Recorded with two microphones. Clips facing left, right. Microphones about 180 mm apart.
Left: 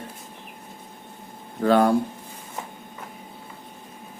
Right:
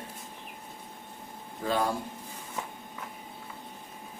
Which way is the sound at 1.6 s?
65° left (ahead or behind).